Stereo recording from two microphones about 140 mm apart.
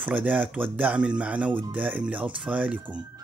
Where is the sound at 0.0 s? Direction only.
10° right (ahead or behind).